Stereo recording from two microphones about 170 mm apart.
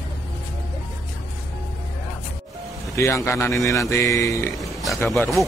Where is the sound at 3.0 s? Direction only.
15° left (ahead or behind).